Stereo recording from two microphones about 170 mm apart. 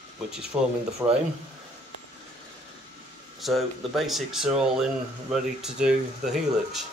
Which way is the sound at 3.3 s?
Centre (ahead or behind).